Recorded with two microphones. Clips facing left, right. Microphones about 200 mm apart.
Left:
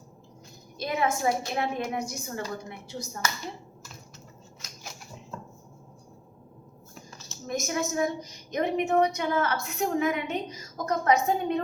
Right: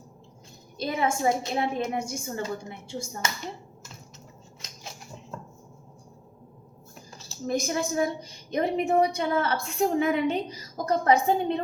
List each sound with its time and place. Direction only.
0.8 s a woman's voice: 30° right (ahead or behind)
7.2 s a woman's voice: 30° right (ahead or behind)